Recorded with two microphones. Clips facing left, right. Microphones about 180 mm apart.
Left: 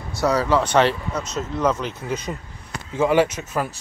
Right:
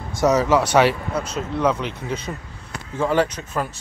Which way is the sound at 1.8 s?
5° left (ahead or behind).